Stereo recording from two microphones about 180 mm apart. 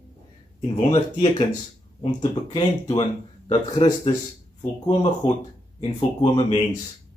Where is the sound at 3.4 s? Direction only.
35° left (ahead or behind).